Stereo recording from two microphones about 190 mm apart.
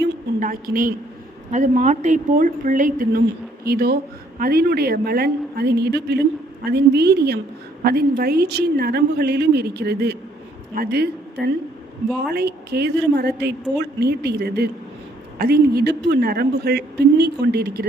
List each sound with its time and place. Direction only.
0.3 s a woman's voice: 45° right (ahead or behind)